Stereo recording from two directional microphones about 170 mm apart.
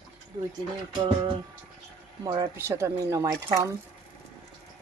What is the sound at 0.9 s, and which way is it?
Music, 35° right (ahead or behind).